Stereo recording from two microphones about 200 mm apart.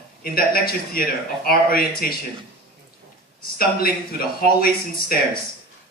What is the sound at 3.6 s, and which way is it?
A man's voice, 50° left (ahead or behind).